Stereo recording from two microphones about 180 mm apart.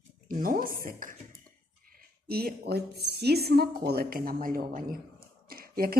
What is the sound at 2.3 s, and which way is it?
A woman's voice, 60° right (ahead or behind).